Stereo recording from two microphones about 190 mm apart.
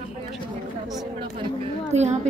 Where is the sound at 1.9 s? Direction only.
35° right (ahead or behind).